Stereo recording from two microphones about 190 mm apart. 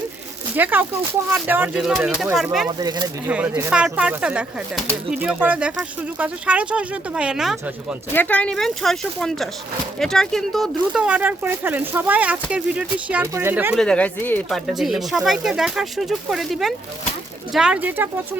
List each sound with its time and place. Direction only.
0.5 s speech: 10° right (ahead or behind)
2.6 s speech: 20° right (ahead or behind)
3.2 s speech: 5° right (ahead or behind)
8.1 s speech: 10° left (ahead or behind); by 13.7 s 10° right (ahead or behind)
13.7 s speech: 5° left (ahead or behind)